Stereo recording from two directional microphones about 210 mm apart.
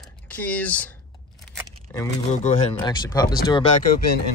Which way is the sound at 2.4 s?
30° left (ahead or behind).